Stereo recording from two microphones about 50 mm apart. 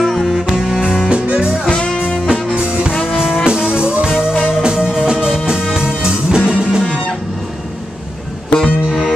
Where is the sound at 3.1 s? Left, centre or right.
Centre.